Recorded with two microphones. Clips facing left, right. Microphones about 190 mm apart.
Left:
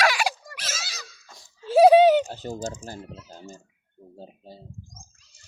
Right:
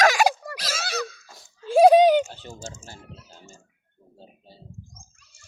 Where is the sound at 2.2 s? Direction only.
40° left (ahead or behind).